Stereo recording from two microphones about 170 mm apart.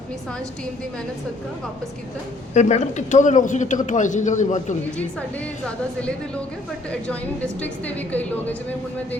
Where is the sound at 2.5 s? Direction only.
40° left (ahead or behind).